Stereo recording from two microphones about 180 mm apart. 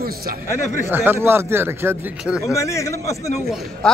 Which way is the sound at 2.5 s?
15° left (ahead or behind).